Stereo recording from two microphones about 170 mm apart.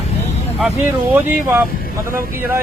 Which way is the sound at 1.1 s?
10° right (ahead or behind).